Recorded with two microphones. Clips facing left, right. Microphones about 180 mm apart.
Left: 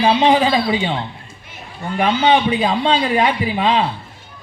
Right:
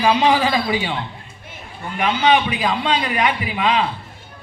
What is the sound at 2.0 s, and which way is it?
A man's voice, 30° left (ahead or behind).